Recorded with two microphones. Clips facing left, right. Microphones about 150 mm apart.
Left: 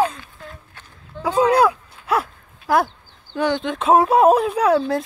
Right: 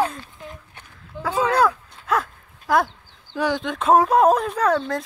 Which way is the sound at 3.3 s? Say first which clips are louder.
Left 2 dB; centre (ahead or behind).